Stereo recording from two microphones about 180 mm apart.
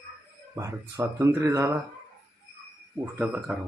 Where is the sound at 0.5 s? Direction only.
15° right (ahead or behind).